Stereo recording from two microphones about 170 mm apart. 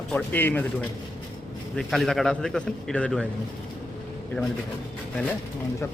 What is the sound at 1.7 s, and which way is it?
A man's voice, centre (ahead or behind).